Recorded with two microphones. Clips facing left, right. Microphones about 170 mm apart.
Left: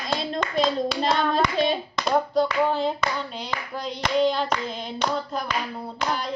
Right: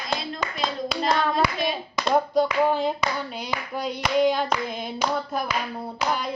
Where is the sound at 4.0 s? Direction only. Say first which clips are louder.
Right 1 dB; 10° right (ahead or behind).